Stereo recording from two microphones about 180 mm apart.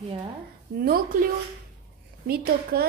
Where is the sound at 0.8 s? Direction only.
55° right (ahead or behind).